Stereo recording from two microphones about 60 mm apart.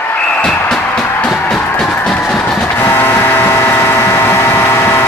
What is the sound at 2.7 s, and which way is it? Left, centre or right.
Vehicle, left.